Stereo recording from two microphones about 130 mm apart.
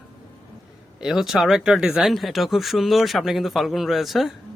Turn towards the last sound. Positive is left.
turn(degrees=0)  # may be behind; listen again after turning